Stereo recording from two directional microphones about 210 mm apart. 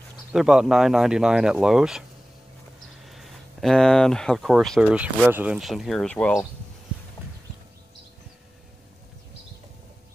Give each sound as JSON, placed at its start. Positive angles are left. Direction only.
{"t": 0.3, "sound": "speech", "side_deg": -5}
{"t": 3.1, "sound": "speech", "side_deg": 0}